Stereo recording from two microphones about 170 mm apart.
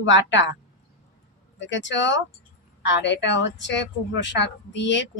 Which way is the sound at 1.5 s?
90° left.